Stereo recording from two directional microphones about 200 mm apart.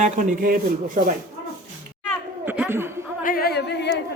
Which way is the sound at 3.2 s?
45° left (ahead or behind).